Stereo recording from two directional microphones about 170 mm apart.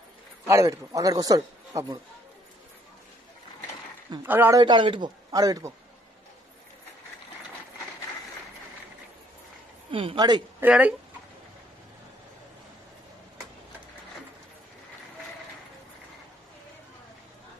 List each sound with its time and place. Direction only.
0.5 s a man's voice: 20° right (ahead or behind)
4.2 s speech: 10° right (ahead or behind)
4.6 s a man's voice: 25° right (ahead or behind)
9.8 s speech: 30° right (ahead or behind)
10.6 s speech: 10° right (ahead or behind)